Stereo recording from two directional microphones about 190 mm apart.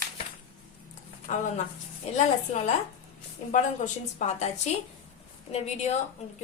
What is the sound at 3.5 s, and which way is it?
A woman's voice, 40° left (ahead or behind).